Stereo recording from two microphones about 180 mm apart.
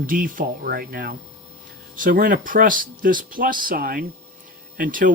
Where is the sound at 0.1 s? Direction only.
50° right (ahead or behind).